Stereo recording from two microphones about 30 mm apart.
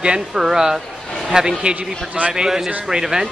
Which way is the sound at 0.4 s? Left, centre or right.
Centre.